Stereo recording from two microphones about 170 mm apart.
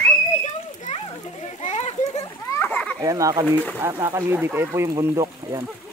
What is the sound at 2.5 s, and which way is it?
Splash, 10° left (ahead or behind).